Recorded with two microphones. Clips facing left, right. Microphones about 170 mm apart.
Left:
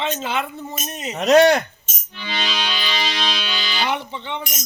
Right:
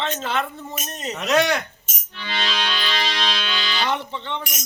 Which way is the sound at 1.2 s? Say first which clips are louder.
Left 7 dB; 40° left (ahead or behind).